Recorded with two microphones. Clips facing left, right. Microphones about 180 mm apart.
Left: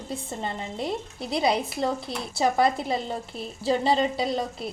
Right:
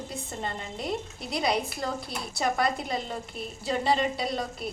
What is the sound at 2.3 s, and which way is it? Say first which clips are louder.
Speech: left 5 dB; 25° left (ahead or behind).